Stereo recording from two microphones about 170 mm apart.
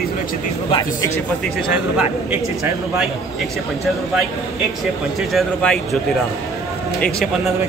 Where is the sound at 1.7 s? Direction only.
10° right (ahead or behind).